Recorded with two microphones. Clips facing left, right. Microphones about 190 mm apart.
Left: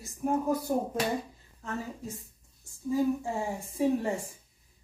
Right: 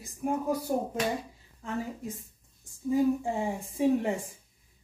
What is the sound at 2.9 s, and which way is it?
A woman's voice, 20° right (ahead or behind).